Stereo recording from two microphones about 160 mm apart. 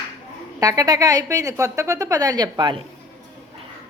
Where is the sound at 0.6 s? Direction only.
20° right (ahead or behind).